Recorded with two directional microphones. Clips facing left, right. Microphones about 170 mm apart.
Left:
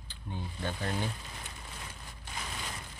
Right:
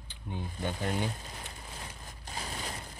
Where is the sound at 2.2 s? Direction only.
35° right (ahead or behind).